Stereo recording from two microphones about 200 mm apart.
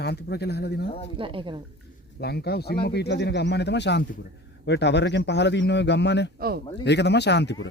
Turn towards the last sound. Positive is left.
turn(degrees=60)  # may be behind; listen again after turning